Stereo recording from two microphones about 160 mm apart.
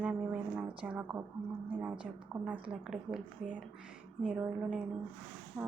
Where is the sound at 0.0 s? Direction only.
5° right (ahead or behind).